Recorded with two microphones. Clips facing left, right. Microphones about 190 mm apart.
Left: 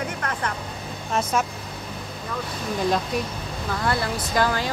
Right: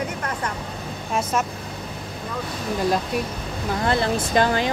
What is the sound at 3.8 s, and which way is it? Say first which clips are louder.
Speech: right 4 dB; 20° right (ahead or behind).